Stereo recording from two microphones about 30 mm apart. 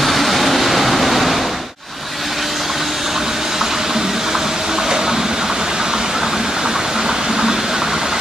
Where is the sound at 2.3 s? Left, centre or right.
Centre.